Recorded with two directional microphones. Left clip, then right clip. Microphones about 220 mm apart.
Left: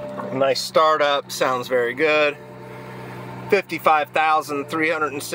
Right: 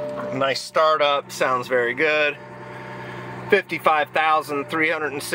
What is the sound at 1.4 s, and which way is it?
Speech, 10° left (ahead or behind).